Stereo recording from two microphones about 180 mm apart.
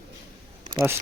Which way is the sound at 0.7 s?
15° right (ahead or behind).